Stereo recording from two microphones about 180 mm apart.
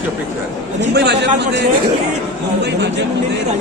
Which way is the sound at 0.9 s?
70° right (ahead or behind).